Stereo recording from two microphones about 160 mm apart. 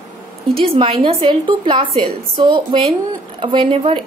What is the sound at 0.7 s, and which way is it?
A woman's voice, 35° right (ahead or behind).